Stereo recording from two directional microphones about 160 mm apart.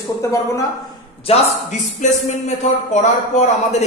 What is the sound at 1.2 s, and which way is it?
Speech, 45° left (ahead or behind).